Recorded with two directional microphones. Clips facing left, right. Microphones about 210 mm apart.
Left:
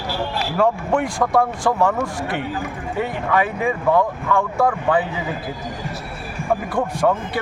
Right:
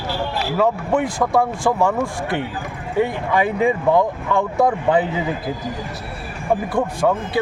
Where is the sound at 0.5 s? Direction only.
5° right (ahead or behind).